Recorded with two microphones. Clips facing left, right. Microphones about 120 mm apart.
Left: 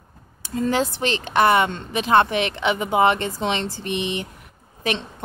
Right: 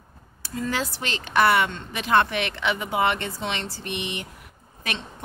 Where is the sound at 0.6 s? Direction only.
25° left (ahead or behind).